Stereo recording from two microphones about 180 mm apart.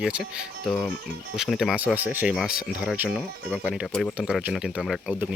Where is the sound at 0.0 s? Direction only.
5° right (ahead or behind).